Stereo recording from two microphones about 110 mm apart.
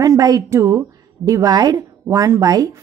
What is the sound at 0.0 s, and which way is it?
A woman's voice, 35° right (ahead or behind).